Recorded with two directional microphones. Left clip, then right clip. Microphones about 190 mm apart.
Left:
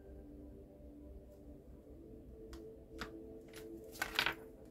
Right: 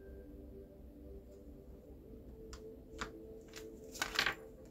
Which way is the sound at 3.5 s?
20° right (ahead or behind).